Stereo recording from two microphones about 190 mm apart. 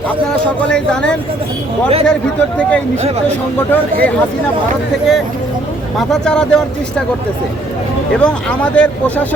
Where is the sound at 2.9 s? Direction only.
35° right (ahead or behind).